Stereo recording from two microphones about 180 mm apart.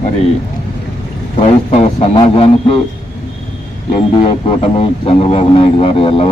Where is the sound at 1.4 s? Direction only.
30° left (ahead or behind).